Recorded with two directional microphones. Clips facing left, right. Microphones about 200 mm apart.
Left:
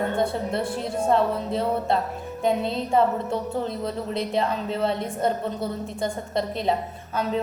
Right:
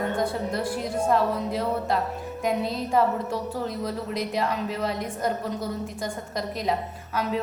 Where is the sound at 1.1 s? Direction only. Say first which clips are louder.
Left 2 dB; 25° left (ahead or behind).